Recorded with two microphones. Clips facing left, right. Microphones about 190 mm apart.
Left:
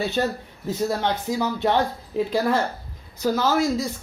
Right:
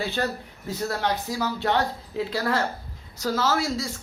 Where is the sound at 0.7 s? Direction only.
20° left (ahead or behind).